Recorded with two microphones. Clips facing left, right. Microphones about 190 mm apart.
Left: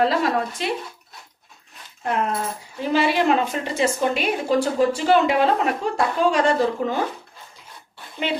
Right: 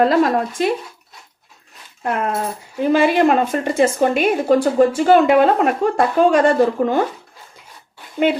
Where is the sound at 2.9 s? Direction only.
50° right (ahead or behind).